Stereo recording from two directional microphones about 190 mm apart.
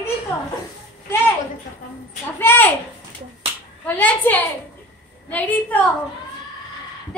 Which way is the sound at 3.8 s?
10° left (ahead or behind).